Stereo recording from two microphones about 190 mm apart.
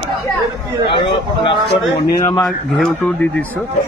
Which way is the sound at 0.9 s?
25° left (ahead or behind).